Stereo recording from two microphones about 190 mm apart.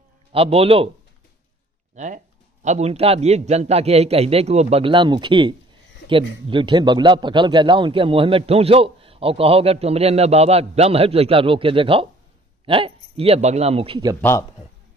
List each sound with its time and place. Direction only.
0.3 s a man's voice: 30° right (ahead or behind)
2.0 s a man's voice: 40° right (ahead or behind)